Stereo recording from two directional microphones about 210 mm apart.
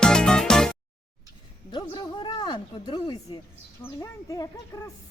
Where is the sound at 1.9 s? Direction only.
20° left (ahead or behind).